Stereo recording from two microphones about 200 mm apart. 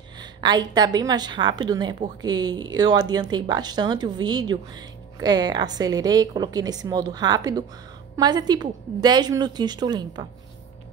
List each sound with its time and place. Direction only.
0.2 s speech: 20° right (ahead or behind)